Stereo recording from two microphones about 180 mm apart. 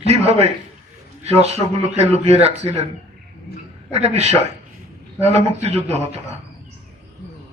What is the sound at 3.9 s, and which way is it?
A man's voice, 35° right (ahead or behind).